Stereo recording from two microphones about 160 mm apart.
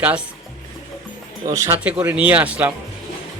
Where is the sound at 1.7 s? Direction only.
10° right (ahead or behind).